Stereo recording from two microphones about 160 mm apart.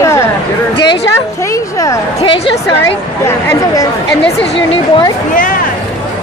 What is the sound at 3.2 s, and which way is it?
Speech, 15° left (ahead or behind).